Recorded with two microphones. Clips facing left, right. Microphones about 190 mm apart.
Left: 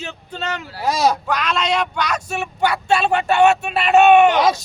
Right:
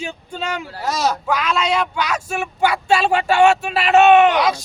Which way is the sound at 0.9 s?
10° left (ahead or behind).